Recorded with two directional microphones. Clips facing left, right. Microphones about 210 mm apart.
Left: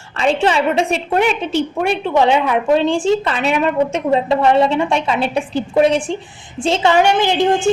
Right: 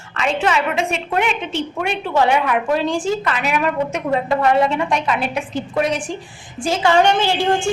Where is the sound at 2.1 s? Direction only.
25° left (ahead or behind).